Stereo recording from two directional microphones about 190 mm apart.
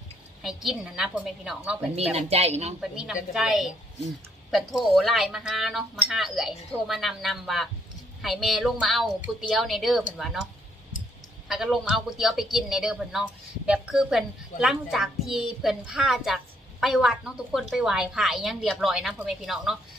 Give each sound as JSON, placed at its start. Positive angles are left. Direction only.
{"t": 0.4, "sound": "speech", "side_deg": 0}
{"t": 2.2, "sound": "a woman's voice", "side_deg": -35}
{"t": 2.8, "sound": "speech", "side_deg": -5}
{"t": 11.4, "sound": "speech", "side_deg": 0}